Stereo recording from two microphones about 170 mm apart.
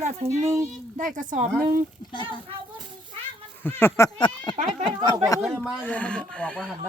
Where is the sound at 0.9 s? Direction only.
45° right (ahead or behind).